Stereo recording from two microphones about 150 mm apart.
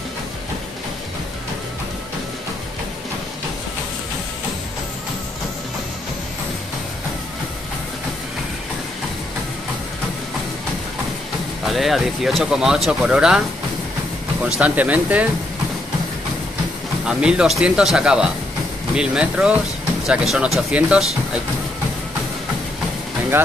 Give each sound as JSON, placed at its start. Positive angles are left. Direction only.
{"t": 11.6, "sound": "speech", "side_deg": 0}
{"t": 14.6, "sound": "speech", "side_deg": -10}
{"t": 17.0, "sound": "speech", "side_deg": -5}